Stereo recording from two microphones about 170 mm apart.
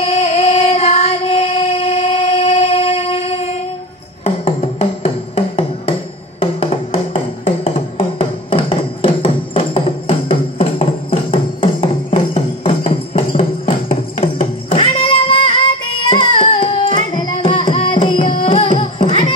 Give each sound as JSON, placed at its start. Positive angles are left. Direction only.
{"t": 0.0, "sound": "music", "side_deg": 35}
{"t": 16.1, "sound": "carnatic music", "side_deg": 30}
{"t": 18.4, "sound": "music", "side_deg": 30}